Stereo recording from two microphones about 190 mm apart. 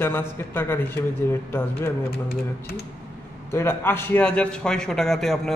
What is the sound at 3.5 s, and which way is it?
A man's voice, 10° left (ahead or behind).